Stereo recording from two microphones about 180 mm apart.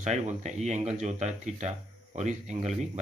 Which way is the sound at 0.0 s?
40° right (ahead or behind).